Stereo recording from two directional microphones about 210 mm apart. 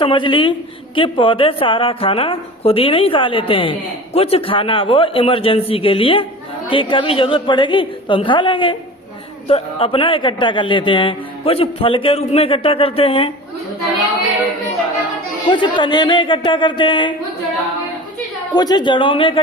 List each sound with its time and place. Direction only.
0.0 s a woman's voice: 25° left (ahead or behind)
15.4 s a woman's voice: 20° left (ahead or behind)
18.5 s a woman's voice: 20° left (ahead or behind)